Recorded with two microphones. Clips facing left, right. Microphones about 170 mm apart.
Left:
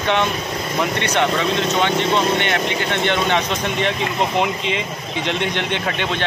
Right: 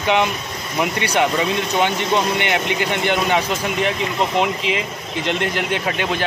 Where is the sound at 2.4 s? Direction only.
10° right (ahead or behind).